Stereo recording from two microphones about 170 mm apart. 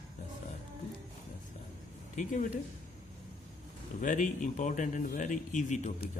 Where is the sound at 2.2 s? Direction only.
50° left (ahead or behind).